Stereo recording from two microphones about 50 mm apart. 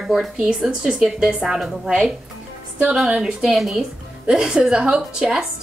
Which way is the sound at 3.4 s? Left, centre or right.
Centre.